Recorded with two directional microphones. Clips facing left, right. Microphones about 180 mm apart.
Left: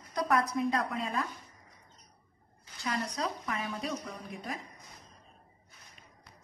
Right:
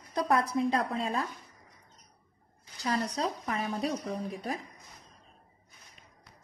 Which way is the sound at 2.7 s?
35° right (ahead or behind).